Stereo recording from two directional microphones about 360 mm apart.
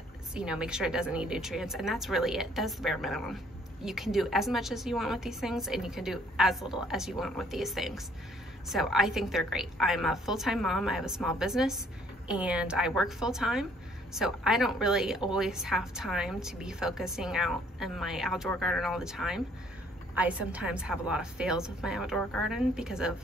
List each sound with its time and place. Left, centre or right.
0.3 s a woman's voice: centre